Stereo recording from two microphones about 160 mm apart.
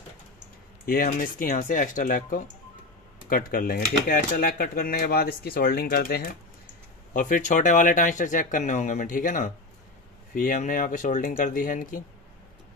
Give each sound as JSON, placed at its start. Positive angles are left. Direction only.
{"t": 0.8, "sound": "speech", "side_deg": 65}
{"t": 7.2, "sound": "speech", "side_deg": 60}